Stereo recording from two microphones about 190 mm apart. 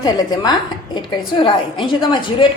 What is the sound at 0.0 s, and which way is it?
A woman's voice, 20° left (ahead or behind).